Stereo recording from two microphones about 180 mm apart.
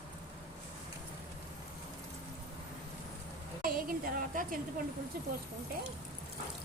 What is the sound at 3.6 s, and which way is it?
Speech, 50° right (ahead or behind).